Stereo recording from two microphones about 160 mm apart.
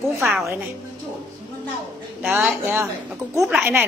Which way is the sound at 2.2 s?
10° right (ahead or behind).